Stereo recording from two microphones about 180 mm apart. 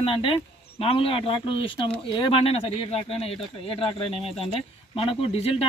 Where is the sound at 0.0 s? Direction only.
30° left (ahead or behind).